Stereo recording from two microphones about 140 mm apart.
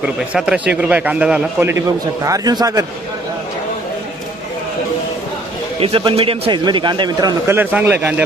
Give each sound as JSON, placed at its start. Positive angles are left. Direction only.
{"t": 0.0, "sound": "a man's voice", "side_deg": -5}
{"t": 2.2, "sound": "a man's voice", "side_deg": -25}
{"t": 5.8, "sound": "a man's voice", "side_deg": -40}
{"t": 7.5, "sound": "a man's voice", "side_deg": -10}